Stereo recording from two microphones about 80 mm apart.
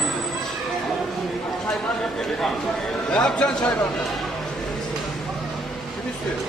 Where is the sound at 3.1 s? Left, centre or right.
Centre.